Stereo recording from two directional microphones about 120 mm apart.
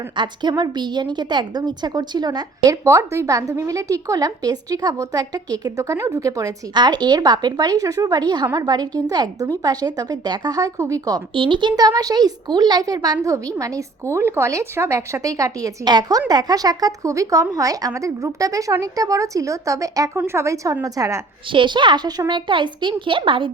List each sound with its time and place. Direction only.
0.2 s a woman's voice: 35° right (ahead or behind)
2.8 s a woman's voice: 25° right (ahead or behind)
21.5 s a woman's voice: 40° right (ahead or behind)